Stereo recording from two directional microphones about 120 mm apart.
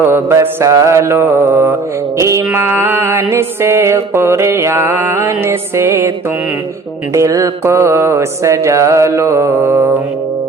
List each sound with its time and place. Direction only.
0.0 s music: 20° right (ahead or behind)
7.1 s music: 25° right (ahead or behind)